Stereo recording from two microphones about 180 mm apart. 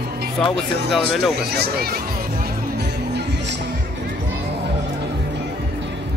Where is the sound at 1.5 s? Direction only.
60° right (ahead or behind).